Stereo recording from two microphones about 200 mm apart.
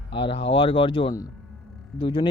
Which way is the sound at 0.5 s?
25° left (ahead or behind).